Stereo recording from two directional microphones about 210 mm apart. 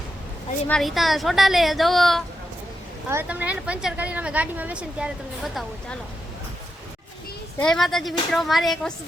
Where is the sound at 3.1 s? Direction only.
10° right (ahead or behind).